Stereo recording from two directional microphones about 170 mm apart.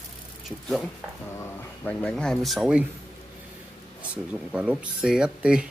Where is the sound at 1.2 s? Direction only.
15° left (ahead or behind); by 2.8 s 5° right (ahead or behind).